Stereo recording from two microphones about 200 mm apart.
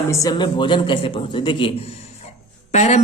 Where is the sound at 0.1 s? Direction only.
20° left (ahead or behind).